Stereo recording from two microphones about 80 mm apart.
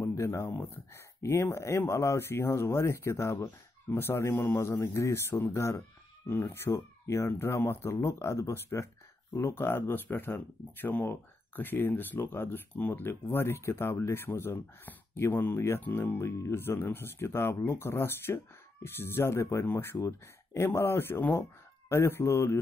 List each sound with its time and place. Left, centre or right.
0.0 s speech: left